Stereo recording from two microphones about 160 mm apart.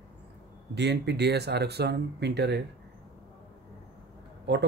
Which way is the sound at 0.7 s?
90° right.